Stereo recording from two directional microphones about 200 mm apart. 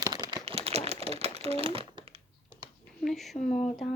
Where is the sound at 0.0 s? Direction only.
20° right (ahead or behind).